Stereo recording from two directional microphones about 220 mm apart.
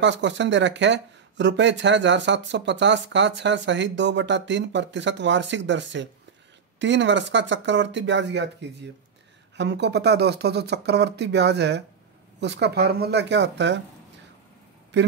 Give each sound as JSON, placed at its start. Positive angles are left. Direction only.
{"t": 0.0, "sound": "speech", "side_deg": -55}
{"t": 14.9, "sound": "speech", "side_deg": -50}